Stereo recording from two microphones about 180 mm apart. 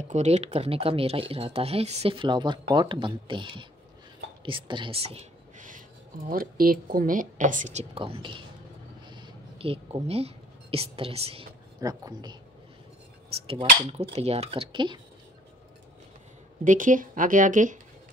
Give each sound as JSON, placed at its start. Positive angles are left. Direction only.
{"t": 0.1, "sound": "speech", "side_deg": -40}
{"t": 11.8, "sound": "speech", "side_deg": -20}
{"t": 13.3, "sound": "speech", "side_deg": -30}
{"t": 16.6, "sound": "speech", "side_deg": -45}